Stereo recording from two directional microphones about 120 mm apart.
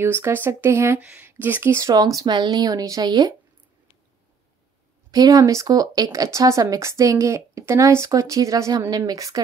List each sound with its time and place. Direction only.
0.0 s speech: 20° right (ahead or behind); by 3.3 s 35° right (ahead or behind)
5.1 s speech: 30° right (ahead or behind)